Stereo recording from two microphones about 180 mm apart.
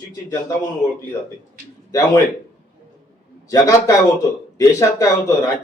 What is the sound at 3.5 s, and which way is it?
A man's voice, 20° left (ahead or behind).